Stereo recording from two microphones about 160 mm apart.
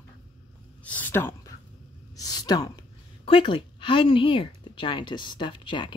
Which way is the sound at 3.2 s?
30° left (ahead or behind).